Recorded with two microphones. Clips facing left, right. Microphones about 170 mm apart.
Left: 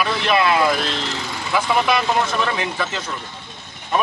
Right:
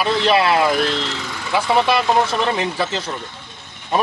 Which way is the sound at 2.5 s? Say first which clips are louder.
Right 3 dB; 30° right (ahead or behind).